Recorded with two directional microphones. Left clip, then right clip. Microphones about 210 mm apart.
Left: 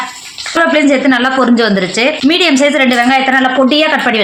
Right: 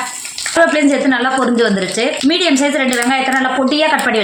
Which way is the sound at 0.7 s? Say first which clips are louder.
Left 4 dB; 50° left (ahead or behind).